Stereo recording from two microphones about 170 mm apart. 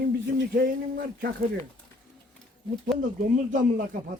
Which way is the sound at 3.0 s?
50° right (ahead or behind).